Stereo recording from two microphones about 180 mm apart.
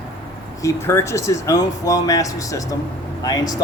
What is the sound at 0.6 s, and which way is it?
Speech, 15° left (ahead or behind).